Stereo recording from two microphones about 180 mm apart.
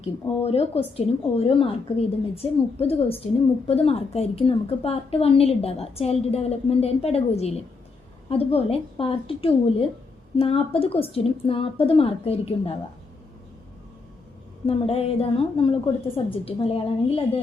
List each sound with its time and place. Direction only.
0.0 s a woman's voice: 35° left (ahead or behind)
14.7 s a woman's voice: 35° left (ahead or behind)